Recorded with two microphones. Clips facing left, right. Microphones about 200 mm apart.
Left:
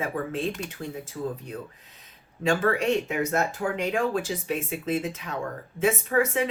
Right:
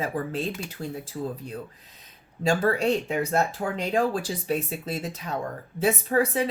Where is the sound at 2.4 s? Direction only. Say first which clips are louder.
Right 1 dB; 35° right (ahead or behind).